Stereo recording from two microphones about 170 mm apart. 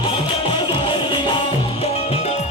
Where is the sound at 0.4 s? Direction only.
30° left (ahead or behind).